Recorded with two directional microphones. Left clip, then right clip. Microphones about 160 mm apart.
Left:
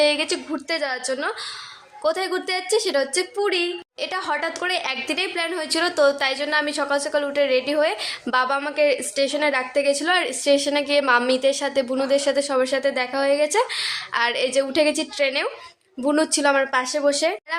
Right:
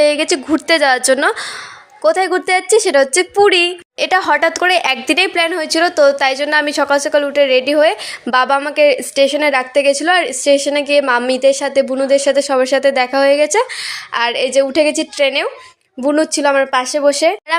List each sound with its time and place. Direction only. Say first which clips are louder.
0.0 s a woman's voice: right 7 dB; 40° right (ahead or behind)
16.0 s speech: right 6 dB; 25° right (ahead or behind)